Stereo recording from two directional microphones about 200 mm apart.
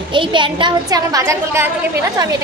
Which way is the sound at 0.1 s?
25° right (ahead or behind).